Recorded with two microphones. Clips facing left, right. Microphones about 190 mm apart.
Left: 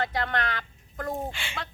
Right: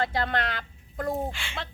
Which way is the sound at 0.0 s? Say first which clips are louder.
Right 1 dB; 25° right (ahead or behind).